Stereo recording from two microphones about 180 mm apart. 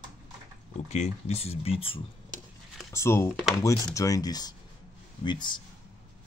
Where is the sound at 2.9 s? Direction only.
15° left (ahead or behind).